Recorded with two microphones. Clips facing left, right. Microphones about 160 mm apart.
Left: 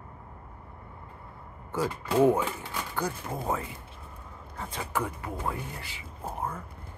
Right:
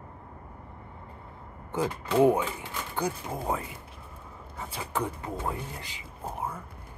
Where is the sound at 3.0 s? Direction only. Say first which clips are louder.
Right 2 dB; 20° right (ahead or behind).